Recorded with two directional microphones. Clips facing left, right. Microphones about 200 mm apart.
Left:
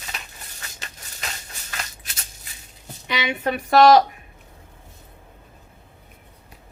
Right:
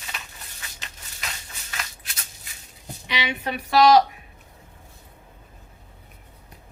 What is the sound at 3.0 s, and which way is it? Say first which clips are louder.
A woman's voice: left 4 dB; 50° left (ahead or behind).